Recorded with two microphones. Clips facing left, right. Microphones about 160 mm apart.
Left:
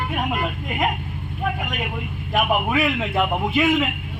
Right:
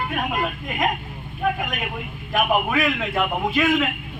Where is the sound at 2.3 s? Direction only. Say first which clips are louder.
Even; 15° left (ahead or behind).